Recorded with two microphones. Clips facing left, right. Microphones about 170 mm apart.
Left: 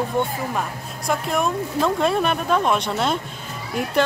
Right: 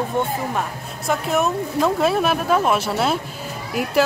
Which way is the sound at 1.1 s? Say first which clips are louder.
Right 2 dB; 5° right (ahead or behind).